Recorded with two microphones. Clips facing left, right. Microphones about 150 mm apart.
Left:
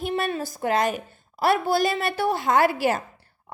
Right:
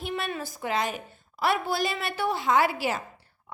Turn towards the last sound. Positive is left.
turn(degrees=50)  # may be behind; listen again after turning